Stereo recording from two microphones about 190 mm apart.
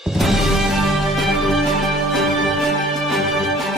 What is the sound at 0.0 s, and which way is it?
Music, centre (ahead or behind).